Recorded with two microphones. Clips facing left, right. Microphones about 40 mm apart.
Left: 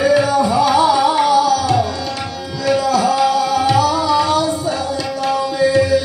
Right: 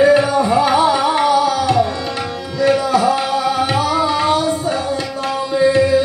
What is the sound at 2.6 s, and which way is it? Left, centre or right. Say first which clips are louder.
Tabla: right 1 dB; right.